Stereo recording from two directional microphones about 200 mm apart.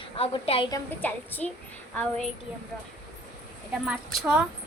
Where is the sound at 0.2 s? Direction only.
30° left (ahead or behind).